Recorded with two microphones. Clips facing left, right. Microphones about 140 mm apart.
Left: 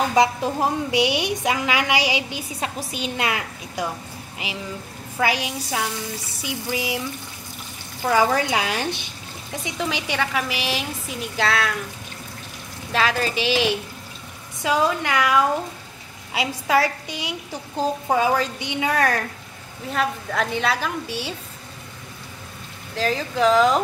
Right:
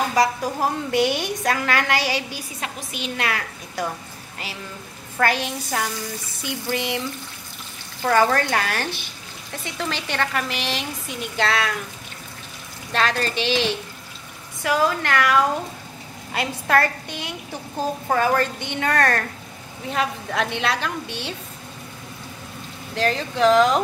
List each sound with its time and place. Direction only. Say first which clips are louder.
0.1 s a woman's voice: left 2 dB; 20° left (ahead or behind)
0.9 s a woman's voice: right 2 dB; 45° right (ahead or behind)
1.4 s a woman's voice: even; 15° left (ahead or behind)
8.0 s a woman's voice: right 1 dB; 10° left (ahead or behind)
12.9 s a woman's voice: left 1 dB; 5° left (ahead or behind)
14.6 s a woman's voice: even; 20° left (ahead or behind); by 21.4 s 5° left (ahead or behind)
22.9 s a woman's voice: even; centre (ahead or behind)